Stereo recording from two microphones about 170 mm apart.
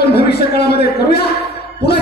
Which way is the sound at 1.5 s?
70° left (ahead or behind).